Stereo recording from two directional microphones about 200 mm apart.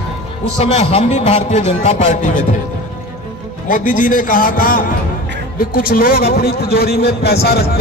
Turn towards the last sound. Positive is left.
turn(degrees=50)  # may be behind; listen again after turning